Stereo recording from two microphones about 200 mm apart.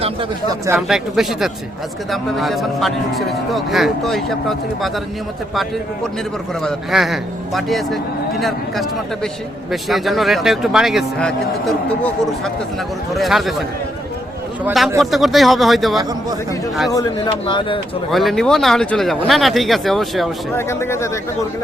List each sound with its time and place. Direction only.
0.8 s speech: centre (ahead or behind)
6.6 s speech: centre (ahead or behind)
13.1 s speech: centre (ahead or behind)
16.9 s speech: 20° left (ahead or behind)
18.1 s speech: centre (ahead or behind)
20.6 s speech: 15° left (ahead or behind)